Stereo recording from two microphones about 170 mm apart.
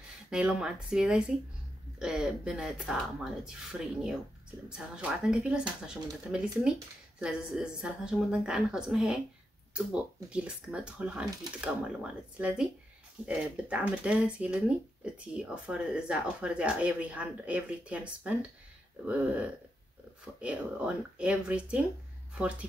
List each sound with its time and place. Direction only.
0.3 s speech: 5° right (ahead or behind)